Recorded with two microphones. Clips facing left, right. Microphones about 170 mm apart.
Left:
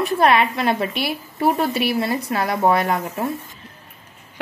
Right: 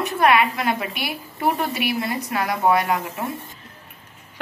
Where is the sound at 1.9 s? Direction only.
35° left (ahead or behind).